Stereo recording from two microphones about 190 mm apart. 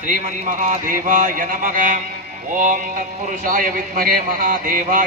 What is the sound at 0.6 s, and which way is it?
A man's voice, 45° right (ahead or behind).